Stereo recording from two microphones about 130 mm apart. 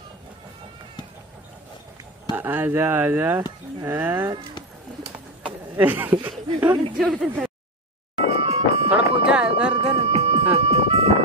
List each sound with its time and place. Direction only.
2.3 s speech: 15° right (ahead or behind)
5.4 s a sound: 15° right (ahead or behind)
6.2 s speech: 15° right (ahead or behind)
7.0 s speech: centre (ahead or behind)
8.3 s music: 50° right (ahead or behind)
8.9 s a sound: 5° right (ahead or behind)
9.8 s music: 55° right (ahead or behind)